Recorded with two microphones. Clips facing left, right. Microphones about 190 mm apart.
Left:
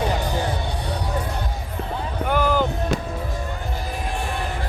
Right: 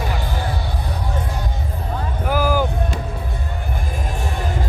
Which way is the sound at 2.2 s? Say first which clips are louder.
Right 1 dB; 5° right (ahead or behind).